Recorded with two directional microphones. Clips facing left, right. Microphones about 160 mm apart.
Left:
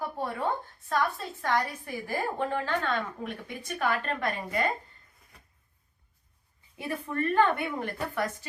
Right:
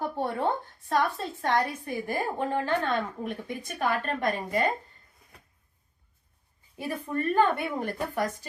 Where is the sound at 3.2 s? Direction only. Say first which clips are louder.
Right 3 dB; 40° right (ahead or behind).